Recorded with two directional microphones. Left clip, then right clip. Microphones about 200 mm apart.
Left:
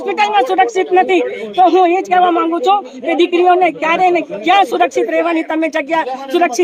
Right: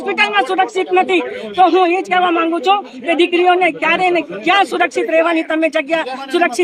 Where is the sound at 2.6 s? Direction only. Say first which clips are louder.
Left 1 dB; 10° right (ahead or behind).